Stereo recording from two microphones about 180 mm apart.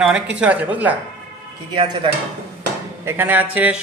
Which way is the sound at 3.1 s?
10° right (ahead or behind).